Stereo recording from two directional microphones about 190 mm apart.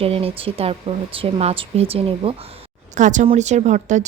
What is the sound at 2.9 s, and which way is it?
Speech, 40° right (ahead or behind).